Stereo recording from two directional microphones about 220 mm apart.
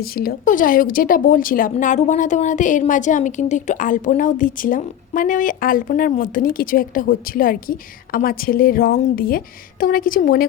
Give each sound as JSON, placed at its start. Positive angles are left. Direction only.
{"t": 0.0, "sound": "speech", "side_deg": 45}